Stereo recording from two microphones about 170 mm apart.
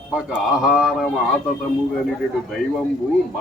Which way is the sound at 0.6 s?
5° right (ahead or behind).